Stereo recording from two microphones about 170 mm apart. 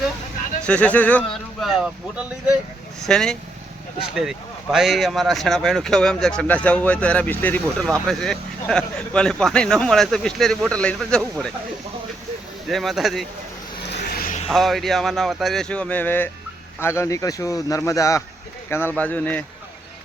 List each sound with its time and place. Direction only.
0.6 s speech: 5° left (ahead or behind)
1.6 s speech: 5° right (ahead or behind)
12.6 s speech: centre (ahead or behind)
13.8 s a sound: 70° left (ahead or behind)
14.4 s speech: centre (ahead or behind)